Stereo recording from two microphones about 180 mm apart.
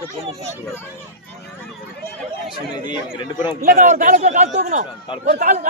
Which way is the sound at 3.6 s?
50° right (ahead or behind).